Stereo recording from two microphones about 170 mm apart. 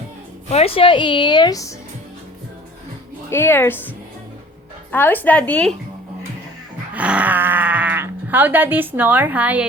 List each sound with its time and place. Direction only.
0.5 s a woman's voice: 35° left (ahead or behind)
3.2 s a woman's voice: 15° left (ahead or behind)
4.9 s a woman's voice: 10° left (ahead or behind)
6.9 s a sound: 5° right (ahead or behind)